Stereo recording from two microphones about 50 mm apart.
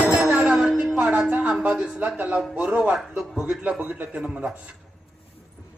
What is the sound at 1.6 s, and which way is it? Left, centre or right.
Speech, right.